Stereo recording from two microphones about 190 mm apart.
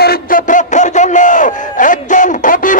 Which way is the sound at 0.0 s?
50° left (ahead or behind).